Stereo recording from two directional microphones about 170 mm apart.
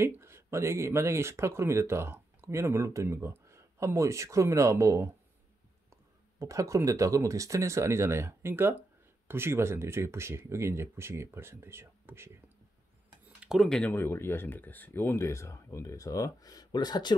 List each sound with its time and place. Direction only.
0.0 s speech: 15° right (ahead or behind)
6.4 s speech: 20° right (ahead or behind); by 17.1 s 25° left (ahead or behind)